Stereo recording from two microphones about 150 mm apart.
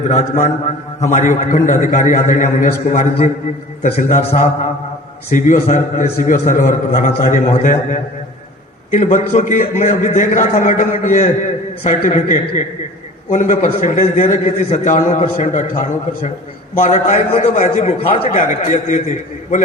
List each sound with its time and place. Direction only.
0.1 s a man's voice: 50° left (ahead or behind)
3.9 s a man's voice: 45° left (ahead or behind)
5.3 s a man's voice: 60° left (ahead or behind)